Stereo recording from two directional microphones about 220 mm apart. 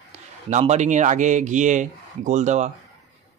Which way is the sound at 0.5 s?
30° right (ahead or behind).